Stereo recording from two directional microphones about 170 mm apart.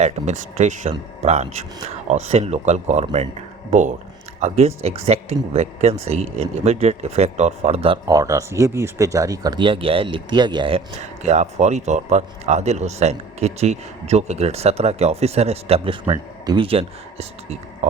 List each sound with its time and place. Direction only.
0.0 s speech: 45° right (ahead or behind)
8.1 s speech: 20° right (ahead or behind); by 17.6 s 35° right (ahead or behind)